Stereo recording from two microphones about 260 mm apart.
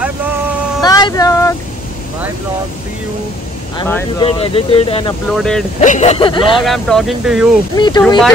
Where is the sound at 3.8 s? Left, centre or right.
Centre.